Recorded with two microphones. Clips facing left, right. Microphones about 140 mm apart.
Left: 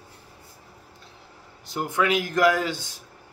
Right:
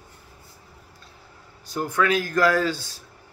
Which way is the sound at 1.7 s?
20° left (ahead or behind).